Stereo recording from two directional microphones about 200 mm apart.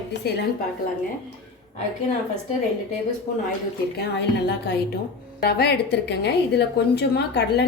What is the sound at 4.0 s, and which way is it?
A woman's voice, 55° left (ahead or behind).